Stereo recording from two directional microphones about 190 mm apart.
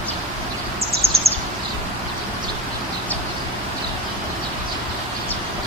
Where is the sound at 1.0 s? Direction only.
15° right (ahead or behind).